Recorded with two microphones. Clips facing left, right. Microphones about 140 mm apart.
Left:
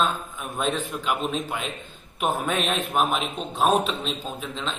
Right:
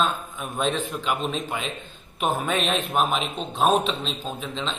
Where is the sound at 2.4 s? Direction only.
5° left (ahead or behind).